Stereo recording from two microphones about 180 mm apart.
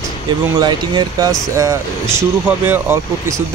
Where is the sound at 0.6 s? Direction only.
25° right (ahead or behind).